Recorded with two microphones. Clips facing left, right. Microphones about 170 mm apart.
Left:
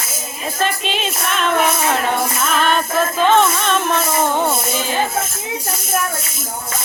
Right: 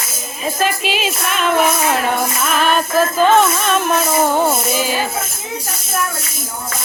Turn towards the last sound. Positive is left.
turn(degrees=-10)  # may be behind; listen again after turning